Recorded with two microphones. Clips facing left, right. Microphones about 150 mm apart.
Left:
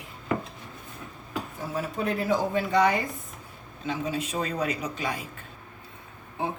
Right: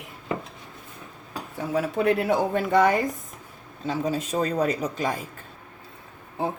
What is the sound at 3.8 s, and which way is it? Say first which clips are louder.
A man's voice: right 3 dB; 40° right (ahead or behind).